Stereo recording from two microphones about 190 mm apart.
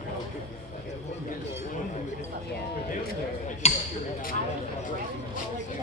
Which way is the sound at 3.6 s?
35° left (ahead or behind).